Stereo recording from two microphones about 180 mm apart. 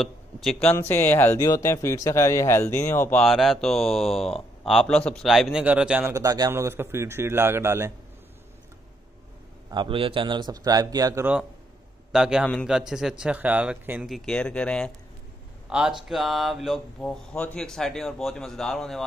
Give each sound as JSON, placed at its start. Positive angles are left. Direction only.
{"t": 0.0, "sound": "speech", "side_deg": 0}
{"t": 3.3, "sound": "speech", "side_deg": 0}
{"t": 6.1, "sound": "a man's voice", "side_deg": -20}
{"t": 9.7, "sound": "a man's voice", "side_deg": -25}
{"t": 12.1, "sound": "speech", "side_deg": -5}
{"t": 15.7, "sound": "speech", "side_deg": -5}